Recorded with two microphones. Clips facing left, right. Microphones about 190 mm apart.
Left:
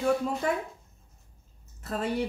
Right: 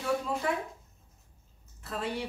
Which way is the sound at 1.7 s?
45° left (ahead or behind).